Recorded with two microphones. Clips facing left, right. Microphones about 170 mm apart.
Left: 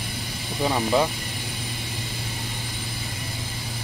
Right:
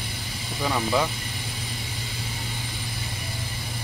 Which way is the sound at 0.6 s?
20° left (ahead or behind).